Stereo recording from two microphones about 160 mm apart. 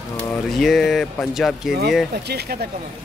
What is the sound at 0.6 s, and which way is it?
A man's voice, centre (ahead or behind).